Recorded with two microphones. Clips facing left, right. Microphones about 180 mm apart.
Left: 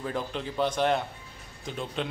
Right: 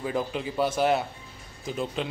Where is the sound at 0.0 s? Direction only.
5° right (ahead or behind).